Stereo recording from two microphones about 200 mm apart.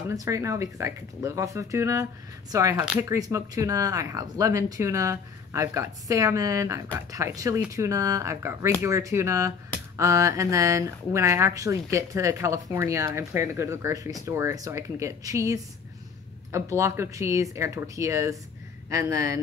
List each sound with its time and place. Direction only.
0.1 s speech: 15° right (ahead or behind)